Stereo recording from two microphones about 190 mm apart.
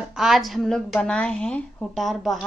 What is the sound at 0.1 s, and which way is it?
A woman's voice, centre (ahead or behind).